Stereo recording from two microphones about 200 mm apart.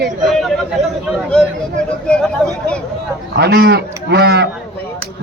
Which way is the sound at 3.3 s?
55° right (ahead or behind).